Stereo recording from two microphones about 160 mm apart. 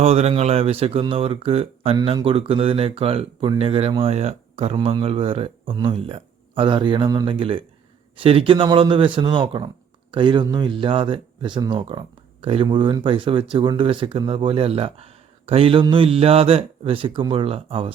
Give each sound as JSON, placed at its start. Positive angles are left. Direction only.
{"t": 0.0, "sound": "speech", "side_deg": -40}